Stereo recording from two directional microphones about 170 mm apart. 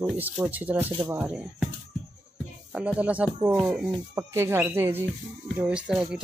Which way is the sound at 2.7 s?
5° right (ahead or behind).